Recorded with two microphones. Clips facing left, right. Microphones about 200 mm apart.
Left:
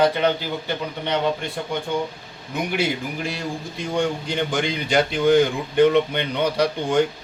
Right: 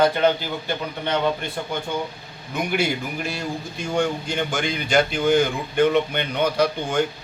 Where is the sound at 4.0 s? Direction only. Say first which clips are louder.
Even; 35° left (ahead or behind).